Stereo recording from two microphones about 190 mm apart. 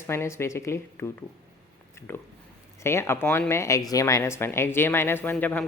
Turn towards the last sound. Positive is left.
turn(degrees=10)  # may be behind; listen again after turning